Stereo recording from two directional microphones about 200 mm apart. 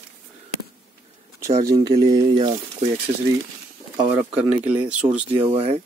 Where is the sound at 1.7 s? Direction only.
20° right (ahead or behind).